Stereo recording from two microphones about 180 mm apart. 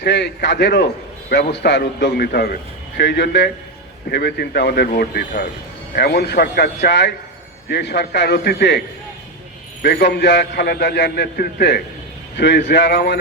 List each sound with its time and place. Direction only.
0.0 s a man's voice: 70° left (ahead or behind)
3.0 s a man's voice: 70° left (ahead or behind)
9.8 s a man's voice: 65° left (ahead or behind)
12.4 s a man's voice: 75° left (ahead or behind)